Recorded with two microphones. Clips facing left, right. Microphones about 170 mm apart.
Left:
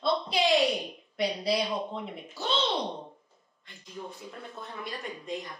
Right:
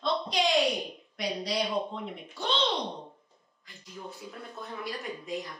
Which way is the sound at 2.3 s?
5° left (ahead or behind).